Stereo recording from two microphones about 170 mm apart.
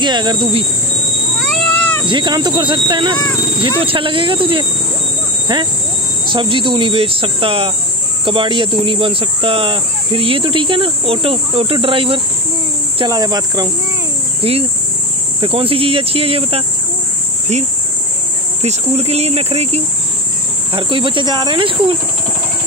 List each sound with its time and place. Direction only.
0.0 s speech: 25° right (ahead or behind)
1.5 s cat: 10° left (ahead or behind)
2.0 s speech: 25° right (ahead or behind)
14.4 s cricket: 35° right (ahead or behind)
15.4 s speech: 30° right (ahead or behind)
18.6 s speech: 40° right (ahead or behind)